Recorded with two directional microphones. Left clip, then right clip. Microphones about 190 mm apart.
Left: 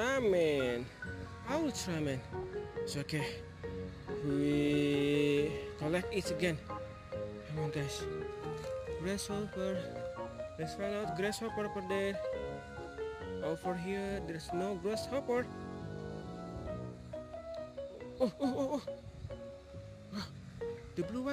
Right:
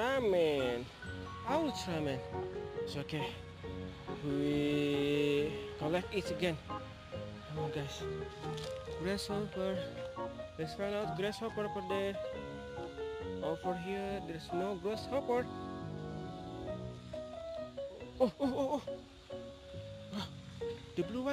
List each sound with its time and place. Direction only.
0.0 s music: 10° left (ahead or behind)
8.5 s speech: centre (ahead or behind)
12.3 s music: centre (ahead or behind)
13.4 s music: 15° left (ahead or behind)
18.2 s speech: 5° left (ahead or behind)
20.9 s music: centre (ahead or behind)